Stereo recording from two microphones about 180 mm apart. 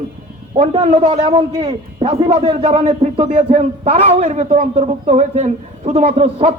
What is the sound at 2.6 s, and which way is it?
A man's voice, 40° right (ahead or behind).